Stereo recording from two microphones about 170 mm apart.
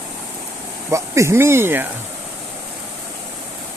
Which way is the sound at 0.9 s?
15° right (ahead or behind).